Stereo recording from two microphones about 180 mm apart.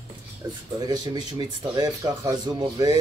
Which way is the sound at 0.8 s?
20° right (ahead or behind).